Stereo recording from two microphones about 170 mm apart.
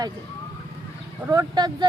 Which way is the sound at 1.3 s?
25° right (ahead or behind).